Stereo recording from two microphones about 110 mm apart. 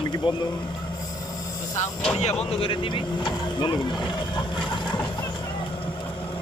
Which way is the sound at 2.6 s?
50° left (ahead or behind).